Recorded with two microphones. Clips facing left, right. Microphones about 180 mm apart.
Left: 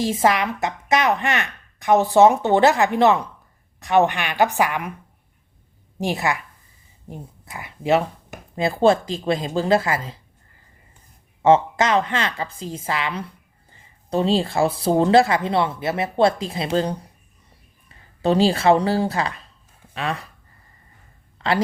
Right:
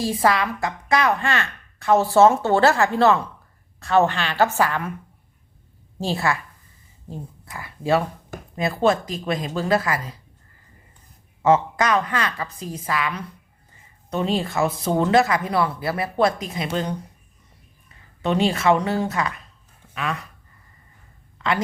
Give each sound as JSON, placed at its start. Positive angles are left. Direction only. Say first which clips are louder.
{"t": 0.0, "sound": "speech", "louder": "left 1 dB", "side_deg": 20}
{"t": 6.0, "sound": "speech", "louder": "left 1 dB", "side_deg": 15}
{"t": 11.4, "sound": "speech", "louder": "left 2 dB", "side_deg": 25}
{"t": 18.2, "sound": "speech", "louder": "left 3 dB", "side_deg": 35}
{"t": 21.3, "sound": "a sound", "louder": "left 2 dB", "side_deg": 35}